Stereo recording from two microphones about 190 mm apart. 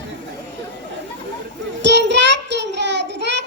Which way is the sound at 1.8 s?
65° right (ahead or behind).